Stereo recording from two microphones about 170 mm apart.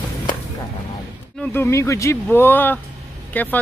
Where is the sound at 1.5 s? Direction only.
15° left (ahead or behind).